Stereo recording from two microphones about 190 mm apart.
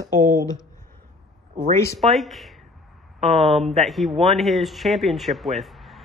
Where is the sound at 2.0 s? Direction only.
Centre (ahead or behind).